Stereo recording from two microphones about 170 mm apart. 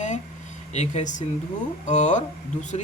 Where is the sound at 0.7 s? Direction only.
40° left (ahead or behind).